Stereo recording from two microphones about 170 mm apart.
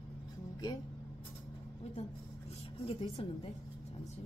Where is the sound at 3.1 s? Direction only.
35° left (ahead or behind).